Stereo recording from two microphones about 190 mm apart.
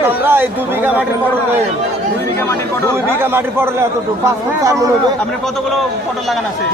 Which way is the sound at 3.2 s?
10° right (ahead or behind).